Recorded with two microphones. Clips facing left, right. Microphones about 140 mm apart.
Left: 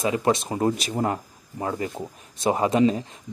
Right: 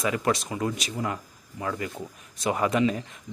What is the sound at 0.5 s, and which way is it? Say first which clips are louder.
Speech: left 6 dB; 35° left (ahead or behind).